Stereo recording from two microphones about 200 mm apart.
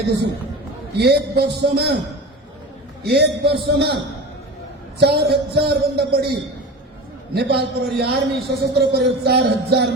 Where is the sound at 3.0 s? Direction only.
55° right (ahead or behind).